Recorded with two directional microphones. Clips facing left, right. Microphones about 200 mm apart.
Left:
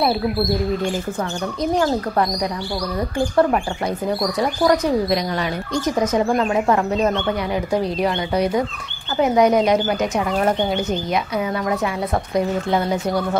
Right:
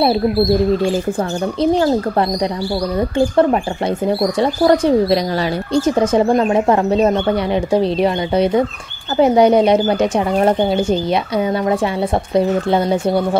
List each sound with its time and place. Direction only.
1.6 s speech: 30° right (ahead or behind)
4.0 s speech: 30° right (ahead or behind)